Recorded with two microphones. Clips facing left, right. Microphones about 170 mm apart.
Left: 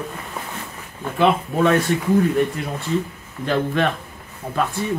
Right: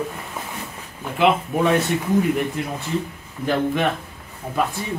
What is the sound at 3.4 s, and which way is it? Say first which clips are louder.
Speech: even; 10° right (ahead or behind).